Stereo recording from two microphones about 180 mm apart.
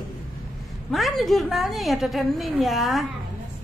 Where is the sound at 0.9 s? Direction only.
Centre (ahead or behind).